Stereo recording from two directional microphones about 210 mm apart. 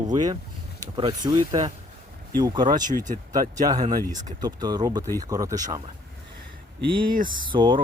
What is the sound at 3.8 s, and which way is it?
Speech, 35° right (ahead or behind).